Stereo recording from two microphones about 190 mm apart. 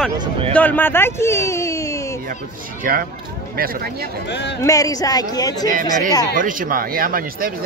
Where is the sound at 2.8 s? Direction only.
50° right (ahead or behind).